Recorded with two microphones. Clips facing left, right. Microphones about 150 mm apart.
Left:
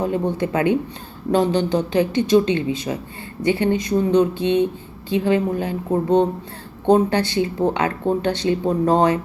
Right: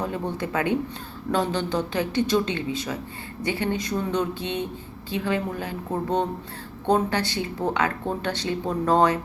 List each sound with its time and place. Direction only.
0.0 s speech: 25° left (ahead or behind)